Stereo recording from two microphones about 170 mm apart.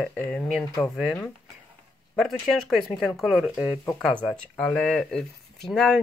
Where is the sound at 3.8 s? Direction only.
10° left (ahead or behind).